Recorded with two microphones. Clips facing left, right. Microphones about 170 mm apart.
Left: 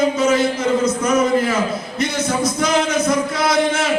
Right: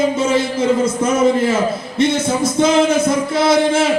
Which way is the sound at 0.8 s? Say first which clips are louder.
Right 2 dB; 25° right (ahead or behind).